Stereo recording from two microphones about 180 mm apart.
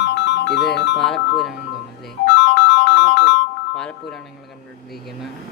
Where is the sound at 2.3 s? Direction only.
75° left (ahead or behind).